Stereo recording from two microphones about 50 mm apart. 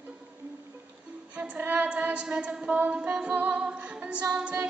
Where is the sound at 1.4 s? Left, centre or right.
Right.